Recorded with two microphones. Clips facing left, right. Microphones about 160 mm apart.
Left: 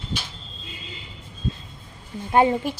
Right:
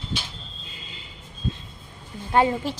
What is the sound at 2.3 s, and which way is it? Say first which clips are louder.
Speech: left 2 dB; 15° left (ahead or behind).